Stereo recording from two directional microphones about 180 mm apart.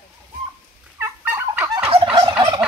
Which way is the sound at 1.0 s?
15° right (ahead or behind).